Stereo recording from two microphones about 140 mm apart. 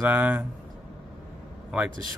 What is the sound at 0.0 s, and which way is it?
Speech, 10° right (ahead or behind).